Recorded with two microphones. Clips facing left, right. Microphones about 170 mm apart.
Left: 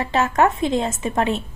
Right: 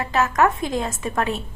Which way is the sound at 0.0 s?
30° left (ahead or behind).